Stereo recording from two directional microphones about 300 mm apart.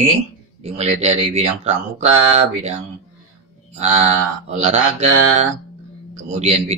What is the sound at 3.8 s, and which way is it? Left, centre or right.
Speech, right.